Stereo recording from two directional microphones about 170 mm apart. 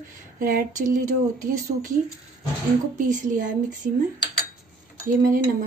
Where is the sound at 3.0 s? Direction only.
50° right (ahead or behind).